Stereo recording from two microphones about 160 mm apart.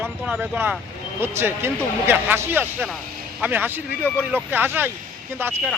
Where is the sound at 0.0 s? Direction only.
10° right (ahead or behind).